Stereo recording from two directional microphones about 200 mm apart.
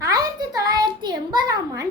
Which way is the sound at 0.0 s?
20° right (ahead or behind).